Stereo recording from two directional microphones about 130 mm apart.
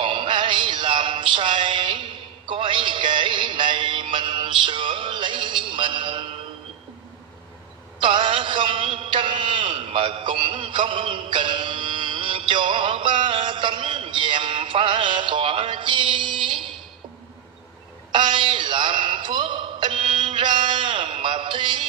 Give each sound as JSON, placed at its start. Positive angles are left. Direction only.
{"t": 0.0, "sound": "music", "side_deg": -40}
{"t": 8.0, "sound": "a man's voice", "side_deg": -40}
{"t": 18.1, "sound": "a sound", "side_deg": -40}